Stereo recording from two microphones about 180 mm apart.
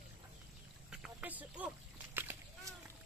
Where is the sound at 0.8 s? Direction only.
5° right (ahead or behind).